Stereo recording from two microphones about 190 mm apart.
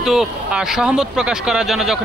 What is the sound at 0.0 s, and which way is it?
Speech, centre (ahead or behind).